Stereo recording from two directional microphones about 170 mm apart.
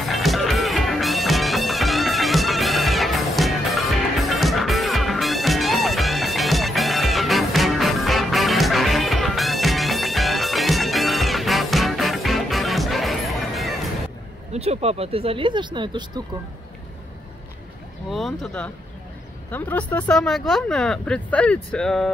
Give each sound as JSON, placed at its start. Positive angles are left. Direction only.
{"t": 0.1, "sound": "music", "side_deg": 0}
{"t": 14.5, "sound": "speech", "side_deg": -40}
{"t": 18.1, "sound": "speech", "side_deg": 0}